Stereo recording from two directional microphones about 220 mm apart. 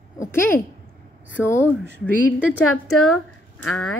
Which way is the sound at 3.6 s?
75° left (ahead or behind).